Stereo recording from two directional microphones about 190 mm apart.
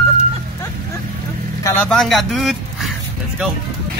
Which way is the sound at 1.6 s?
10° left (ahead or behind).